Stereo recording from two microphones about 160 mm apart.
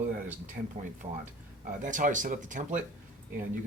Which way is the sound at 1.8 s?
55° right (ahead or behind).